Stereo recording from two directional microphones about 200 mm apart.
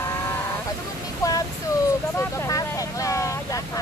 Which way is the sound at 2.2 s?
15° left (ahead or behind).